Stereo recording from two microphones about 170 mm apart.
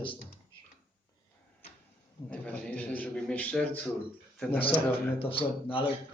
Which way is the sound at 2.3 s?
5° left (ahead or behind).